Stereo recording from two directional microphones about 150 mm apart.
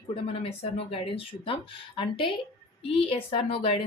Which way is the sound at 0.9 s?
40° left (ahead or behind).